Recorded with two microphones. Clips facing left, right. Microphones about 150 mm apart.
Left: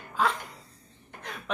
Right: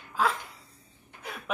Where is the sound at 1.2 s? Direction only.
5° right (ahead or behind).